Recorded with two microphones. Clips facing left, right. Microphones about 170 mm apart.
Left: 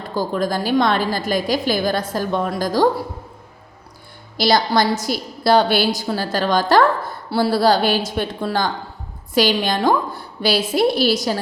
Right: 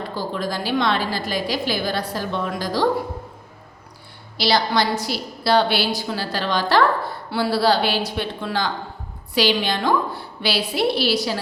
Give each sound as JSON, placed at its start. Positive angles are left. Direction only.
{"t": 0.1, "sound": "a woman's voice", "side_deg": 45}
{"t": 4.4, "sound": "a woman's voice", "side_deg": 45}